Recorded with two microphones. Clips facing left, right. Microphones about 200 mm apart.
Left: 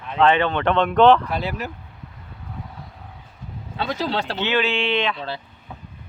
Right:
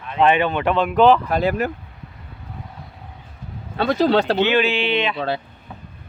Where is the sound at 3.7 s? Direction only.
55° right (ahead or behind).